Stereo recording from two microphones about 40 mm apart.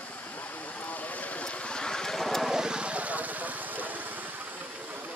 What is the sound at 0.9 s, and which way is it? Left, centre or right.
Vehicle, left.